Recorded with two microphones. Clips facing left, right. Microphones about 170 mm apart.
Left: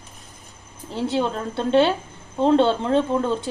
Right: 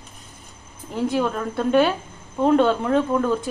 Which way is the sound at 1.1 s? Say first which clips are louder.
Left 1 dB; 25° left (ahead or behind).